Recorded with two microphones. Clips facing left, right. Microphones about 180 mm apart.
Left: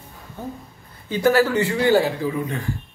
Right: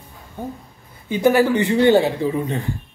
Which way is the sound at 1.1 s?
15° right (ahead or behind).